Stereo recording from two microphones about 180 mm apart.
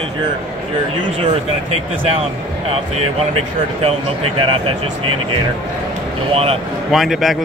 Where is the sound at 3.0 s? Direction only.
35° right (ahead or behind).